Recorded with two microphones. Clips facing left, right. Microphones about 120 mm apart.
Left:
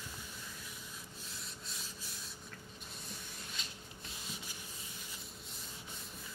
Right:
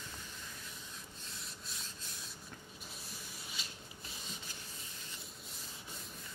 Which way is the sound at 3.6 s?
5° right (ahead or behind).